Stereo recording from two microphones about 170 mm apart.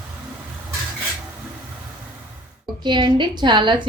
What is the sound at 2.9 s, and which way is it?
A woman's voice, 25° right (ahead or behind).